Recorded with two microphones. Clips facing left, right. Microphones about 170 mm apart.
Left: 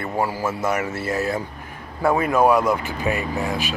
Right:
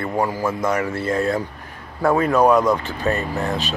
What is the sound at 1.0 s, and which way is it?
Speech, 5° left (ahead or behind).